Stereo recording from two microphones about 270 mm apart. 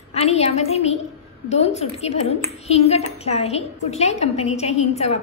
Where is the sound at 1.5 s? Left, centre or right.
Left.